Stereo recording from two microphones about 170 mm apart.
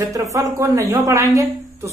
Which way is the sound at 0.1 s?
20° right (ahead or behind).